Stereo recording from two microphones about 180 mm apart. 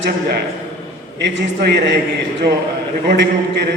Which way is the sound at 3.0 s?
65° right (ahead or behind).